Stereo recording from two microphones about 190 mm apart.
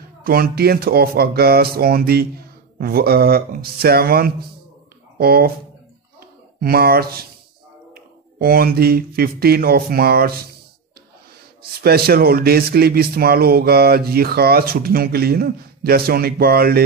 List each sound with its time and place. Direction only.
0.2 s speech: 50° right (ahead or behind)
6.6 s speech: 55° right (ahead or behind)
11.8 s speech: 55° right (ahead or behind)